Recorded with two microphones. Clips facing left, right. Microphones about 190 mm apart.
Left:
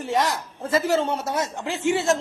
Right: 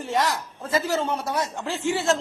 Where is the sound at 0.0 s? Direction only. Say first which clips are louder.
Left 1 dB; 20° left (ahead or behind).